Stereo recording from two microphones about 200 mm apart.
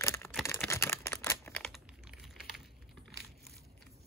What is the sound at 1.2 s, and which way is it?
Crumpling, 10° left (ahead or behind).